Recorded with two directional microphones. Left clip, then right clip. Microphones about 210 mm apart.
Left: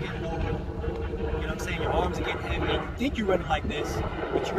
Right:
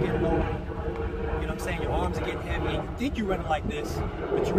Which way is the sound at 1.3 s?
15° left (ahead or behind).